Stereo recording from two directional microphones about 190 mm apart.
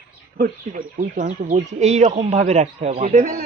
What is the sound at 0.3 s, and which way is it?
Speech, 45° right (ahead or behind).